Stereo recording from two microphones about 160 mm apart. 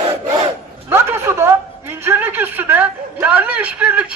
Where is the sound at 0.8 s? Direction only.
15° right (ahead or behind).